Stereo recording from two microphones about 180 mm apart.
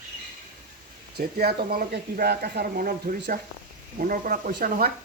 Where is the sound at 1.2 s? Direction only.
55° right (ahead or behind).